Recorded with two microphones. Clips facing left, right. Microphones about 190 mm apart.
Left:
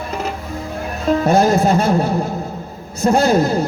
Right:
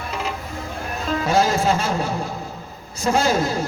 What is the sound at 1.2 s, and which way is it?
Speech, 55° left (ahead or behind).